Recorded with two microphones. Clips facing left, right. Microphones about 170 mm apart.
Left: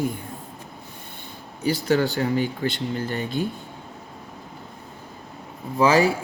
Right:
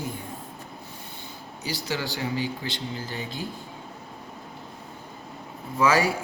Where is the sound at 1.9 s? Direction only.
55° left (ahead or behind).